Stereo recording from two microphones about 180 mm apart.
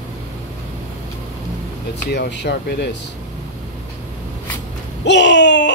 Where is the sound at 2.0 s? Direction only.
70° left (ahead or behind).